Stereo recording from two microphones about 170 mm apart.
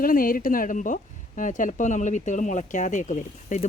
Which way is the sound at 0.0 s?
55° left (ahead or behind).